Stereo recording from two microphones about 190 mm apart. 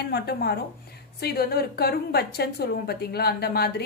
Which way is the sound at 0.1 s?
55° left (ahead or behind).